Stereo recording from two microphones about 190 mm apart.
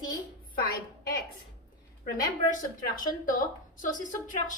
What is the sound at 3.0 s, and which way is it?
A woman's voice, 45° left (ahead or behind).